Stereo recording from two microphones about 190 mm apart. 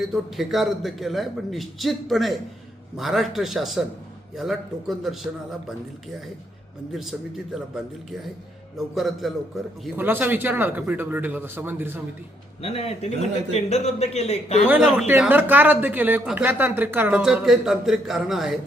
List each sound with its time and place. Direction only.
0.0 s a man's voice: centre (ahead or behind)
6.9 s a man's voice: centre (ahead or behind)
8.8 s a man's voice: centre (ahead or behind)
9.8 s a man's voice: 10° right (ahead or behind)
12.6 s a man's voice: 30° left (ahead or behind)
14.7 s a man's voice: 5° right (ahead or behind)